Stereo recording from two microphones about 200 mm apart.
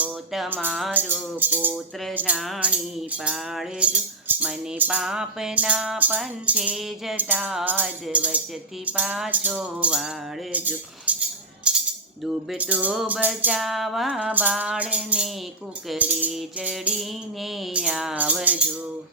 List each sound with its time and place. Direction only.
0.0 s music: 5° right (ahead or behind)